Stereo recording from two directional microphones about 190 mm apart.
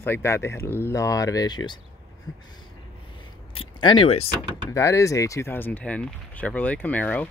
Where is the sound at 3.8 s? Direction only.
25° left (ahead or behind).